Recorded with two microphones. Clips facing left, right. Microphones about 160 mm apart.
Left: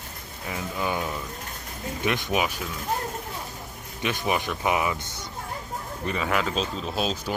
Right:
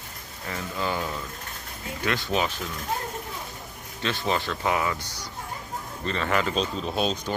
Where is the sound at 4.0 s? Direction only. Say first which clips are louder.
Left 1 dB; 15° left (ahead or behind).